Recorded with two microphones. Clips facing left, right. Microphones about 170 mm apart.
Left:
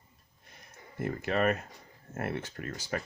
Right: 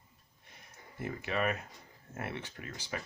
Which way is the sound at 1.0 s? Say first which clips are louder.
Left 5 dB; 45° left (ahead or behind).